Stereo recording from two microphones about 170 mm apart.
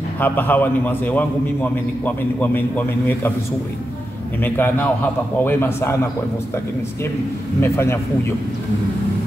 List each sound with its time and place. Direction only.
0.2 s a man's voice: 10° left (ahead or behind)
4.4 s a man's voice: 10° left (ahead or behind)
7.6 s a man's voice: 15° left (ahead or behind)